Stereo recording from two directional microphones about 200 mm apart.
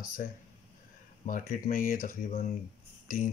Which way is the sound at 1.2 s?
45° left (ahead or behind).